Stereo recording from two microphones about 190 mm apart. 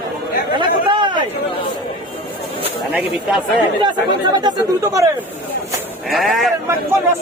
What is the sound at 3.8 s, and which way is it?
Speech, 25° right (ahead or behind).